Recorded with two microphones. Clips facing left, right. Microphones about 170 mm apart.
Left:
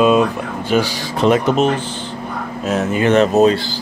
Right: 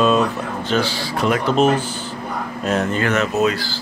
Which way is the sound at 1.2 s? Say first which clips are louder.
Left 5 dB; 25° left (ahead or behind).